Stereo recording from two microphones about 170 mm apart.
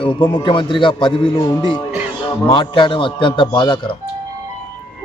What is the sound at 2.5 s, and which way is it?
A man's voice, 30° left (ahead or behind).